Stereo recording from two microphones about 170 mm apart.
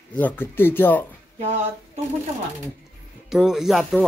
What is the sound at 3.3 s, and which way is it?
Speech, centre (ahead or behind).